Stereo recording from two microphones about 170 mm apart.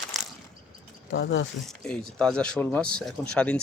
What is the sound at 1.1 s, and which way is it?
Speech, 90° left.